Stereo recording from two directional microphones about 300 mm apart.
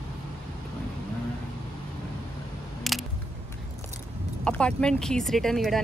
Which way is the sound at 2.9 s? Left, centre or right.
Centre.